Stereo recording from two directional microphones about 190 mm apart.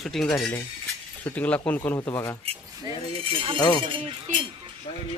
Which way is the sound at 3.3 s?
25° right (ahead or behind).